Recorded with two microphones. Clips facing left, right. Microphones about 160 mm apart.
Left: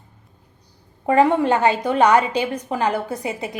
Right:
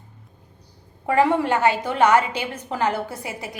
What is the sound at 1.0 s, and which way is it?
A woman's voice, 20° left (ahead or behind).